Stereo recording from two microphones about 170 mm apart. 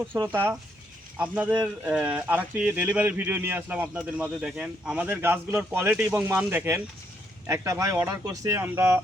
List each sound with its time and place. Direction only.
0.2 s speech: 15° right (ahead or behind)